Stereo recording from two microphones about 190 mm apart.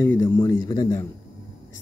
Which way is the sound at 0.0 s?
10° left (ahead or behind).